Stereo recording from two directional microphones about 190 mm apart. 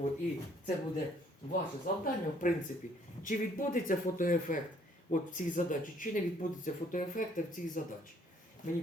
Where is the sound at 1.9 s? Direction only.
45° left (ahead or behind).